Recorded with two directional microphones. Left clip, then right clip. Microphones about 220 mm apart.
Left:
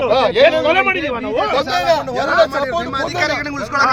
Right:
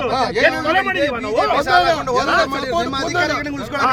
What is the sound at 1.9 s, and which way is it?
Speech, 5° right (ahead or behind).